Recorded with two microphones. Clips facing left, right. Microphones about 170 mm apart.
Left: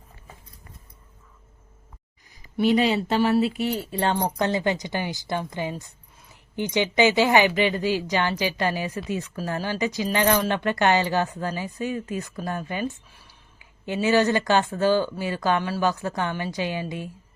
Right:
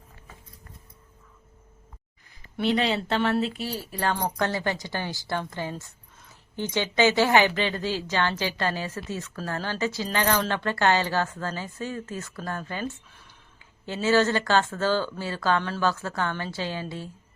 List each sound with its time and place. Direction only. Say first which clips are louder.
2.4 s speech: left 4 dB; 10° left (ahead or behind)
3.7 s speech: left 4 dB; 25° left (ahead or behind)